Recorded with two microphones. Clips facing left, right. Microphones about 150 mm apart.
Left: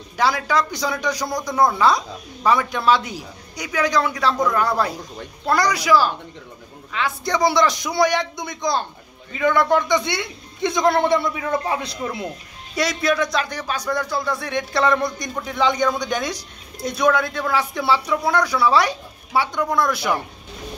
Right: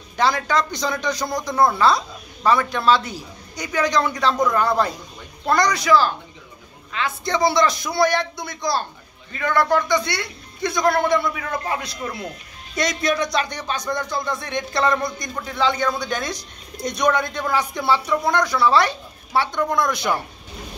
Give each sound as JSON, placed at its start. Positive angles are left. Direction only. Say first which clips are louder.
{"t": 0.2, "sound": "a man's voice", "louder": "even", "side_deg": 10}
{"t": 12.7, "sound": "a man's voice", "louder": "left 1 dB", "side_deg": 5}